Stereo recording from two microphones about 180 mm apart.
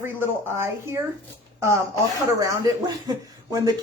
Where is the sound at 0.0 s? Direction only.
10° right (ahead or behind).